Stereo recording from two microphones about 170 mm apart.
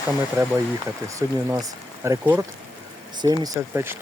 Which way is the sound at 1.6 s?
15° right (ahead or behind).